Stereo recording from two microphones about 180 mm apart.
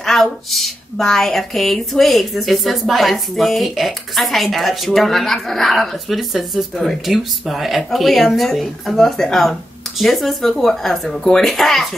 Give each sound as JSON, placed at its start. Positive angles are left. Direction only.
{"t": 0.0, "sound": "a woman's voice", "side_deg": 0}